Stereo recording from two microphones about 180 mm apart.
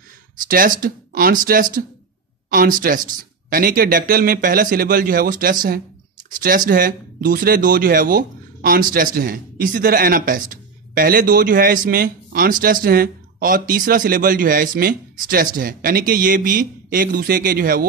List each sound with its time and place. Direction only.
0.5 s speech: 50° right (ahead or behind)